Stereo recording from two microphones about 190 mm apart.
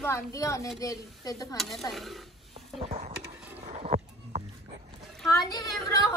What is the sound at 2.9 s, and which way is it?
Speech, 35° right (ahead or behind).